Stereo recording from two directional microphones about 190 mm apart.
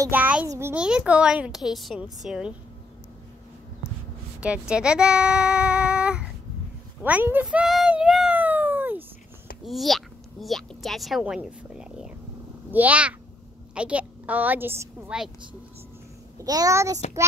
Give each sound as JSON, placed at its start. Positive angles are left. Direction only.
{"t": 0.0, "sound": "a woman's voice", "side_deg": -10}
{"t": 4.4, "sound": "a woman's voice", "side_deg": -5}
{"t": 9.7, "sound": "a woman's voice", "side_deg": 0}
{"t": 16.3, "sound": "a child's voice", "side_deg": -20}